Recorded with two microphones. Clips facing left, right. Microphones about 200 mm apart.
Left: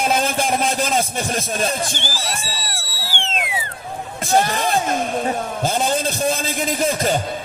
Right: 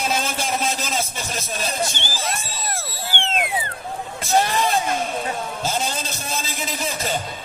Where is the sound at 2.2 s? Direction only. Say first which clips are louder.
Even; 50° right (ahead or behind).